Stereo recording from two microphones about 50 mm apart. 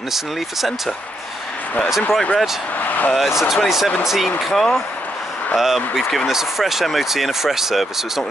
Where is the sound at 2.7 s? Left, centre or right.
Left.